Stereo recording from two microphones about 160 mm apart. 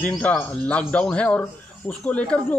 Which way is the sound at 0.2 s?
10° left (ahead or behind).